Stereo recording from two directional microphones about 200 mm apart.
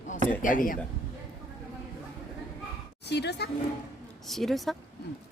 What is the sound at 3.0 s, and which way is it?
Speech, 55° left (ahead or behind).